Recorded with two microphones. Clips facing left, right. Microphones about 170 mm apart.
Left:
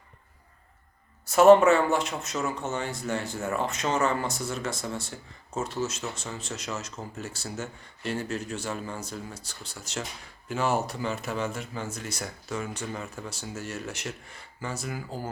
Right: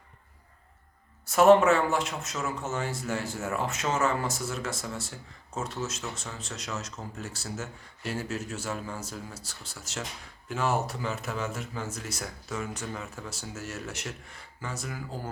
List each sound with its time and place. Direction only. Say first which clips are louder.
1.2 s speech: left 3 dB; centre (ahead or behind)